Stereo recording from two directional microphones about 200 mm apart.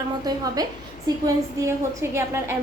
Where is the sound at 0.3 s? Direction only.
20° right (ahead or behind).